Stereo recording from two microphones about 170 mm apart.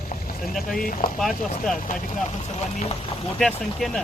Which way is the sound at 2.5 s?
40° left (ahead or behind).